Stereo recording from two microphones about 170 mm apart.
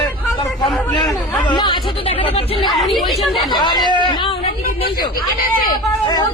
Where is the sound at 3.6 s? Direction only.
25° left (ahead or behind).